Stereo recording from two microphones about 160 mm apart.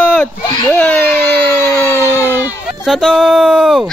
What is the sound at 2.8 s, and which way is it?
Speech, 5° right (ahead or behind).